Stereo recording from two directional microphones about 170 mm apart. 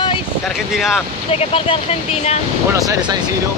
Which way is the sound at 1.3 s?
35° left (ahead or behind).